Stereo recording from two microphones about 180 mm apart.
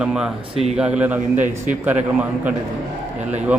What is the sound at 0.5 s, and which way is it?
Speech, 35° right (ahead or behind).